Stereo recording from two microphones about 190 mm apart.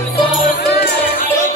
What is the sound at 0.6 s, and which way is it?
Music, 60° left (ahead or behind).